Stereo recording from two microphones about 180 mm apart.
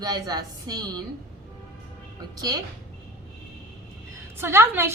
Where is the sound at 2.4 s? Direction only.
20° right (ahead or behind).